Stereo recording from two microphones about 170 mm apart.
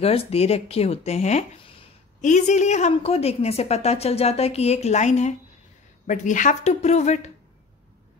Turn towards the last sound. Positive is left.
turn(degrees=40)  # may be behind; listen again after turning